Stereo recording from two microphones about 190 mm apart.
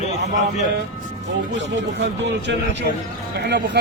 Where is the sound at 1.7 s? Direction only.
70° right (ahead or behind).